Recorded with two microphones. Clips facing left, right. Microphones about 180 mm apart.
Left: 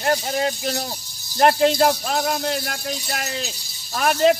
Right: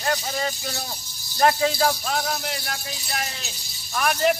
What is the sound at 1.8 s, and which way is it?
Speech, 50° left (ahead or behind).